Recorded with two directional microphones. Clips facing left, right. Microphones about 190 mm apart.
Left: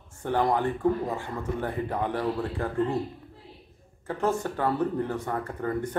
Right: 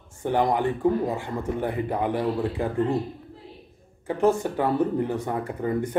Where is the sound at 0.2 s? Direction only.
15° right (ahead or behind).